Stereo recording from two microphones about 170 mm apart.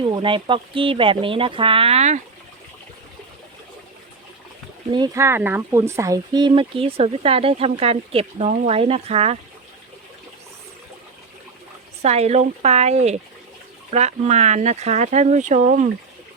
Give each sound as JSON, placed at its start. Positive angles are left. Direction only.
{"t": 0.1, "sound": "speech", "side_deg": -30}
{"t": 4.9, "sound": "speech", "side_deg": -25}
{"t": 5.1, "sound": "speech", "side_deg": -15}
{"t": 12.0, "sound": "speech", "side_deg": -40}